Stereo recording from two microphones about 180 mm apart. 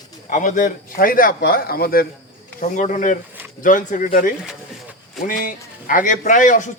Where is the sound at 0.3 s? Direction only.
45° left (ahead or behind).